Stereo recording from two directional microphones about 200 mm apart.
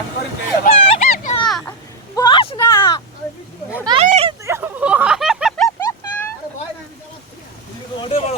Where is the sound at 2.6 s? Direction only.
15° left (ahead or behind).